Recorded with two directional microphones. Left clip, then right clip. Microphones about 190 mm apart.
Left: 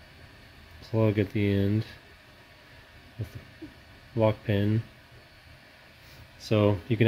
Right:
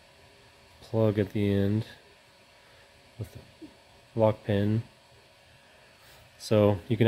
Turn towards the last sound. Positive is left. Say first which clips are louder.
# right 1 dB
turn(degrees=-20)  # may be behind; listen again after turning